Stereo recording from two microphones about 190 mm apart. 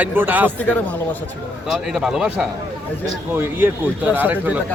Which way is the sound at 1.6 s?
5° right (ahead or behind).